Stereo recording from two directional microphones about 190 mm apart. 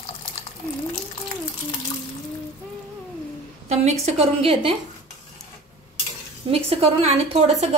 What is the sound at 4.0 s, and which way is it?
Speech, 30° right (ahead or behind).